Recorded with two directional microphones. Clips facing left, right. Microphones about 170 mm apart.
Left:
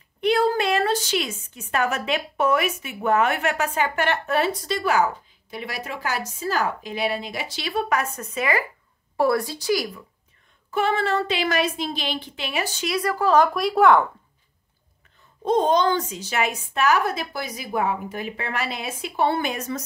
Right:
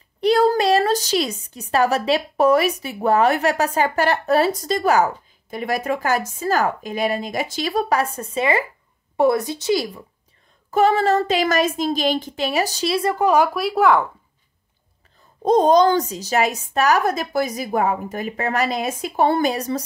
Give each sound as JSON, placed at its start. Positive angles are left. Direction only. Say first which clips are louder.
{"t": 0.2, "sound": "a woman's voice", "louder": "right 4 dB", "side_deg": -40}
{"t": 10.7, "sound": "a woman's voice", "louder": "right 6 dB", "side_deg": -40}
{"t": 13.3, "sound": "speech", "louder": "left 3 dB", "side_deg": -5}
{"t": 15.4, "sound": "a woman's voice", "louder": "right 5 dB", "side_deg": -40}